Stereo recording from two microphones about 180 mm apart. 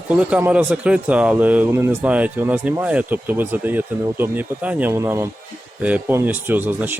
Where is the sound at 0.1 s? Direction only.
10° right (ahead or behind).